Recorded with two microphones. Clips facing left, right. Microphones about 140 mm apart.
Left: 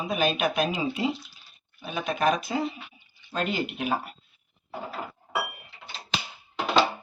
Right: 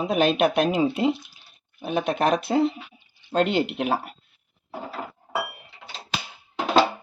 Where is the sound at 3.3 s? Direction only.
75° right (ahead or behind).